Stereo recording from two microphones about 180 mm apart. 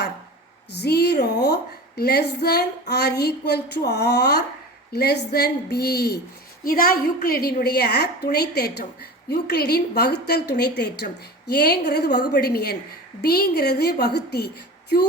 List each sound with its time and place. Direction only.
0.7 s a woman's voice: 65° left (ahead or behind)